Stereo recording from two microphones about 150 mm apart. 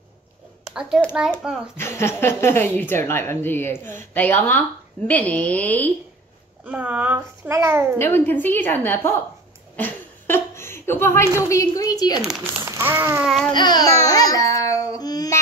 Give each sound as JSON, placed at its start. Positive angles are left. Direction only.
{"t": 0.7, "sound": "babbling", "side_deg": -5}
{"t": 1.8, "sound": "a woman's voice", "side_deg": 15}
{"t": 6.6, "sound": "a child's voice", "side_deg": -10}
{"t": 8.0, "sound": "a woman's voice", "side_deg": 15}
{"t": 12.6, "sound": "a sound", "side_deg": -15}
{"t": 13.2, "sound": "babbling", "side_deg": 0}
{"t": 13.5, "sound": "a sound", "side_deg": 30}
{"t": 15.0, "sound": "singing", "side_deg": 25}